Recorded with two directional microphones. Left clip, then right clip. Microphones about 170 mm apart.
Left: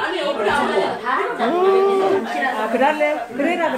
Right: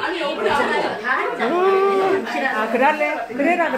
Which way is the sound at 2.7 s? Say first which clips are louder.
Left 1 dB; centre (ahead or behind).